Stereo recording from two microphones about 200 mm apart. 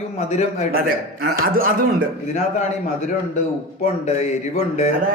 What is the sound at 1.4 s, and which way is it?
Speech, 45° right (ahead or behind).